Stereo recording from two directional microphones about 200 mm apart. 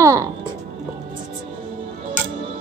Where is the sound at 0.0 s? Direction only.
15° right (ahead or behind).